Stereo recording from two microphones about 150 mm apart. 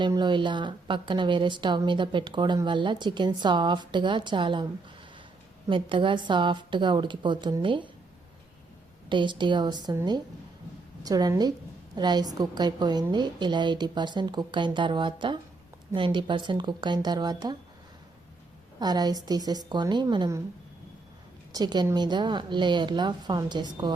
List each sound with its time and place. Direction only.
0.0 s speech: 30° right (ahead or behind)
5.6 s speech: 35° right (ahead or behind)
9.0 s a woman's voice: 30° right (ahead or behind)
18.8 s a woman's voice: 25° right (ahead or behind)
21.5 s a woman's voice: 30° right (ahead or behind)